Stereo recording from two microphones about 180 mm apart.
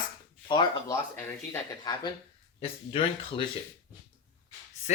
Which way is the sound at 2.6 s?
30° left (ahead or behind).